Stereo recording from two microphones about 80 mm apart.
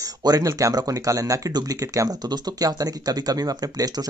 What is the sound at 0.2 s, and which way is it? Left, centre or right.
Speech, right.